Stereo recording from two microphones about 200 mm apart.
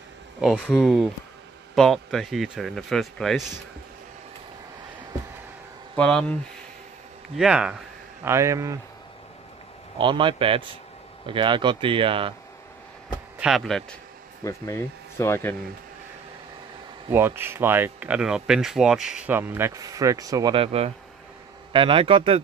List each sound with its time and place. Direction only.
0.4 s speech: centre (ahead or behind)
5.9 s speech: 5° left (ahead or behind)
7.3 s speech: 5° right (ahead or behind)
9.9 s speech: 25° right (ahead or behind)
13.4 s speech: centre (ahead or behind)
14.4 s speech: 15° left (ahead or behind)
17.1 s speech: 10° right (ahead or behind); by 22.4 s 25° right (ahead or behind)